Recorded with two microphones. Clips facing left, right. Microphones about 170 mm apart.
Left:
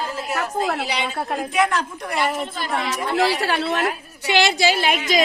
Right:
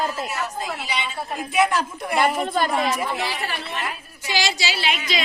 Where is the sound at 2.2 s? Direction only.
50° right (ahead or behind).